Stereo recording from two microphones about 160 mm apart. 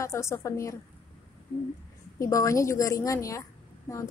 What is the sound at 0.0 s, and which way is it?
Speech, 20° left (ahead or behind).